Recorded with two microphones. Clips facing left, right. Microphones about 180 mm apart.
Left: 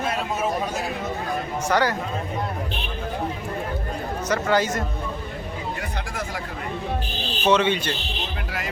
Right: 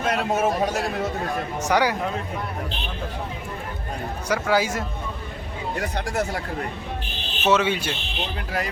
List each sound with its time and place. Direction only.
0.2 s a sound: 65° right (ahead or behind)
1.6 s speech: 10° right (ahead or behind)
4.3 s speech: 10° right (ahead or behind)
7.4 s speech: 5° right (ahead or behind)